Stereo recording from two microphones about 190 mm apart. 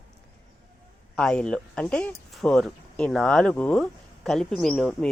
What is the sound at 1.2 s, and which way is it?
A man's voice, 5° left (ahead or behind).